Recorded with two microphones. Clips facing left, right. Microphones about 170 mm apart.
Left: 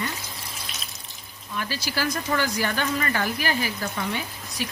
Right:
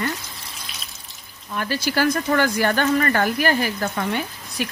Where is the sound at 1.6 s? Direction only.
55° right (ahead or behind).